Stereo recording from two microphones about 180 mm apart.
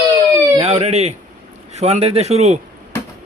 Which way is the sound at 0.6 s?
35° right (ahead or behind).